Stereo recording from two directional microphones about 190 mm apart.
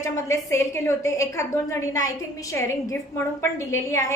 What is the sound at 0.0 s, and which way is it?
A woman's voice, 15° left (ahead or behind).